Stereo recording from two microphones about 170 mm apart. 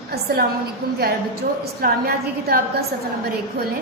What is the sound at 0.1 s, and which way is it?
A woman's voice, 65° right (ahead or behind).